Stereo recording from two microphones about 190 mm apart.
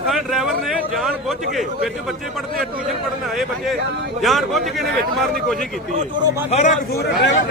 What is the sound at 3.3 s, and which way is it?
A man's voice, centre (ahead or behind).